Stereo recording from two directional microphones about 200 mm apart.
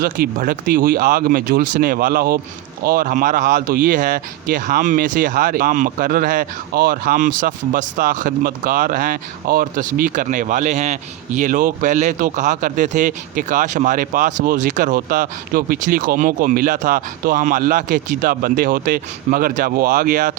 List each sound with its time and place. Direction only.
0.0 s speech: 50° right (ahead or behind)